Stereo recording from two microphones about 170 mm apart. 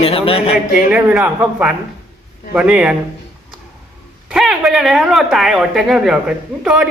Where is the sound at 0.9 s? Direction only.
10° right (ahead or behind).